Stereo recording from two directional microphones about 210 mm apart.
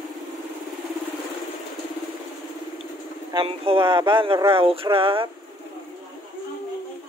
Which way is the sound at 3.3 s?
25° right (ahead or behind).